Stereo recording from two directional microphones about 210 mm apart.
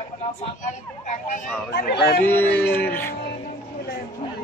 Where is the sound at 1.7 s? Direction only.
50° left (ahead or behind).